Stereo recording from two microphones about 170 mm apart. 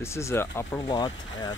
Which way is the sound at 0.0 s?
15° left (ahead or behind).